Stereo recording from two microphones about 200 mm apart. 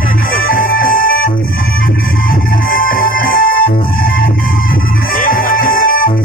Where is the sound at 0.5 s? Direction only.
45° left (ahead or behind).